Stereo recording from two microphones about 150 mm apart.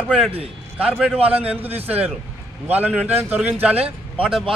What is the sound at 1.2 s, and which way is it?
A man's voice, 10° right (ahead or behind).